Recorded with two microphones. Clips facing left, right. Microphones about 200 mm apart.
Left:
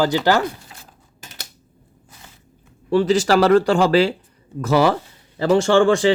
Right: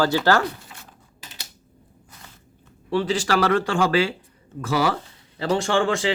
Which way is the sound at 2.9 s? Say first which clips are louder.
Left 6 dB; 40° left (ahead or behind).